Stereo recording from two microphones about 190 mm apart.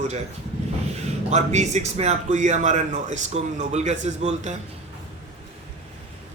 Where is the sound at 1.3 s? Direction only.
35° right (ahead or behind).